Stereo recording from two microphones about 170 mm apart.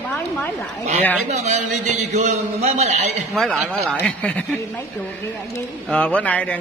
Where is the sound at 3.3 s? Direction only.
Centre (ahead or behind).